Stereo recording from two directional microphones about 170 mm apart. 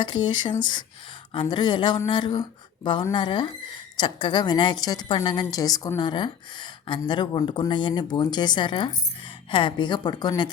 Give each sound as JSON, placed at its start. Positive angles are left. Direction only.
{"t": 0.0, "sound": "a woman's voice", "side_deg": 25}